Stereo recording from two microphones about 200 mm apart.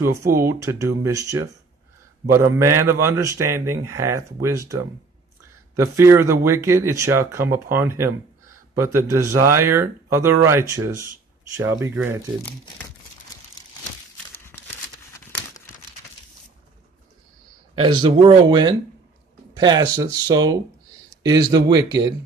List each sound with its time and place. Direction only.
0.0 s a man's voice: 15° right (ahead or behind)
5.8 s a man's voice: 15° right (ahead or behind)
14.1 s crumpling: 10° left (ahead or behind)
18.0 s speech: 25° right (ahead or behind)